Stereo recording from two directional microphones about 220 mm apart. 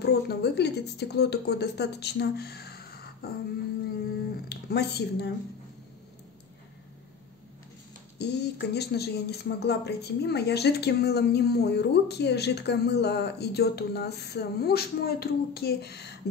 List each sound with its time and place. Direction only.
0.0 s speech: 50° left (ahead or behind)
4.5 s speech: 50° left (ahead or behind)
8.2 s speech: 50° left (ahead or behind)